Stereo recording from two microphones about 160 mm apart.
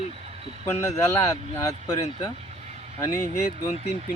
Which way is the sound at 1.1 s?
20° left (ahead or behind).